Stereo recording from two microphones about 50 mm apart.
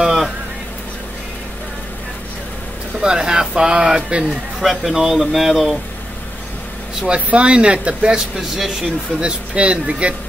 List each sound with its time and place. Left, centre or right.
0.0 s a sound: centre
3.0 s speech: centre
4.6 s speech: centre
7.2 s speech: right; by 8.9 s centre
9.2 s speech: right